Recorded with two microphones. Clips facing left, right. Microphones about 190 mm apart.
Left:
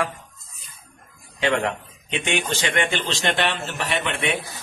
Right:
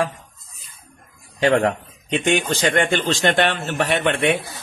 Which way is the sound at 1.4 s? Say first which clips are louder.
Right 5 dB; 40° right (ahead or behind).